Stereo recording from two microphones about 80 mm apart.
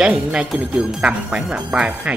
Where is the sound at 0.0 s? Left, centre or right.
Centre.